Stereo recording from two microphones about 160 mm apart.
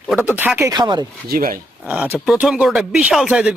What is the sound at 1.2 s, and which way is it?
Speech, 65° right (ahead or behind).